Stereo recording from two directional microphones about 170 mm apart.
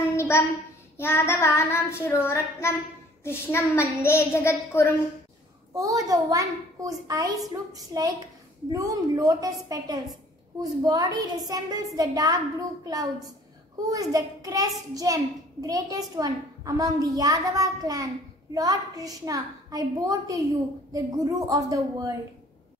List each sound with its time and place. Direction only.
0.1 s a sound: 15° left (ahead or behind)
0.9 s child singing: 15° left (ahead or behind)
5.7 s a child's voice: 20° right (ahead or behind)